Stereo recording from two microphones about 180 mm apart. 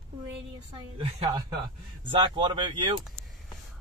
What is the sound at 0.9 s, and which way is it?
Speech, 25° right (ahead or behind).